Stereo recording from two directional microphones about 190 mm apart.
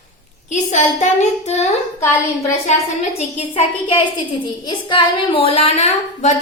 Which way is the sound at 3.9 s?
25° left (ahead or behind).